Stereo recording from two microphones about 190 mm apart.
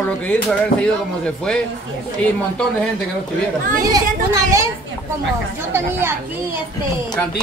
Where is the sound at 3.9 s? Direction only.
15° right (ahead or behind).